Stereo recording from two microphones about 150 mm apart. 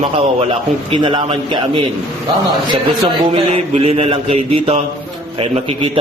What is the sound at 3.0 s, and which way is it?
Speech, 40° right (ahead or behind).